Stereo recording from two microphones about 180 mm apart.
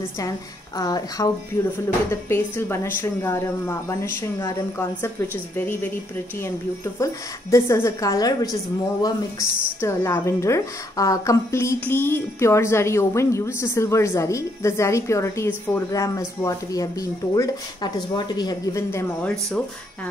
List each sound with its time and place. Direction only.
0.2 s a woman's voice: 20° left (ahead or behind)